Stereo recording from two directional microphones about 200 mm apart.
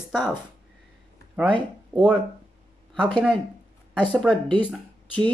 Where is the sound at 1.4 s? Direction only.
25° right (ahead or behind).